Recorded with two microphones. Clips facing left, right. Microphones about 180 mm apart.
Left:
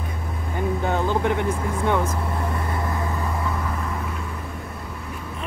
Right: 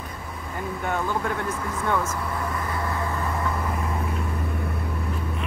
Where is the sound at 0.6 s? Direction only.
30° left (ahead or behind).